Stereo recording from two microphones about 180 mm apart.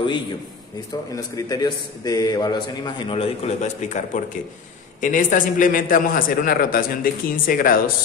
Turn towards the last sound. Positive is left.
turn(degrees=50)  # may be behind; listen again after turning